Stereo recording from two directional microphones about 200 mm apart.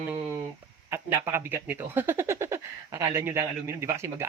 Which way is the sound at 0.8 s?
10° right (ahead or behind).